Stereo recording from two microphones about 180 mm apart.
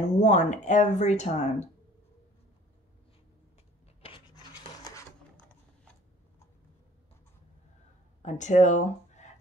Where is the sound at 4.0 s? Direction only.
30° left (ahead or behind).